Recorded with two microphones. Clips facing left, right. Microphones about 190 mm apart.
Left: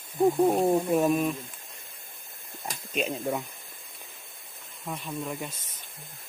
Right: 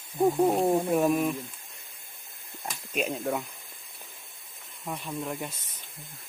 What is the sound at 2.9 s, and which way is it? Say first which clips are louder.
Speech: even; 10° right (ahead or behind).